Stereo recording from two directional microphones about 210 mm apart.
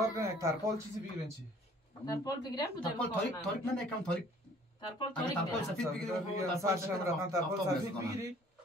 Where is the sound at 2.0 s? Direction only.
20° left (ahead or behind).